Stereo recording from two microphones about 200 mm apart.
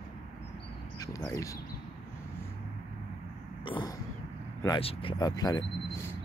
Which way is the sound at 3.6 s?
25° left (ahead or behind).